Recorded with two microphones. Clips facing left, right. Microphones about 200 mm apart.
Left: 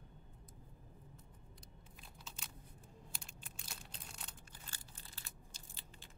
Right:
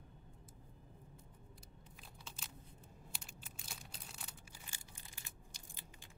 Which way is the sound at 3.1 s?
5° right (ahead or behind).